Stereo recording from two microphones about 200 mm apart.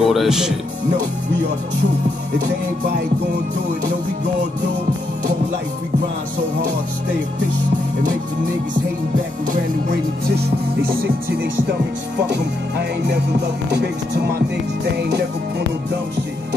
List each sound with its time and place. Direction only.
0.0 s speech: centre (ahead or behind)
10.3 s music: 50° right (ahead or behind)